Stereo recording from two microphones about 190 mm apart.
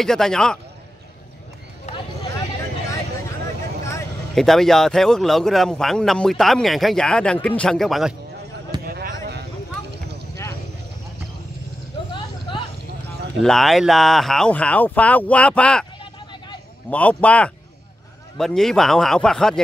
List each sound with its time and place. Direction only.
0.0 s speech: centre (ahead or behind)
3.8 s vehicle: 15° left (ahead or behind)
4.4 s speech: centre (ahead or behind)
8.8 s a sound: 55° right (ahead or behind)
12.1 s a sound: 25° left (ahead or behind)
13.4 s speech: centre (ahead or behind)
16.9 s speech: 5° left (ahead or behind)